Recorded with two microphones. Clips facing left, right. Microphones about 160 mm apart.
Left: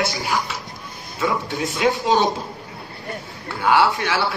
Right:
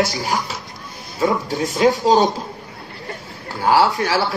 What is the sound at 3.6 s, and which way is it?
Speech, 35° right (ahead or behind).